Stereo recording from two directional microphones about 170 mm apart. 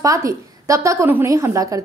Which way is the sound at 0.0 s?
20° right (ahead or behind).